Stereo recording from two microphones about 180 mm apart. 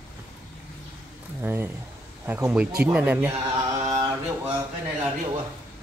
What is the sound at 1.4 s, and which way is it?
Speech, 10° right (ahead or behind).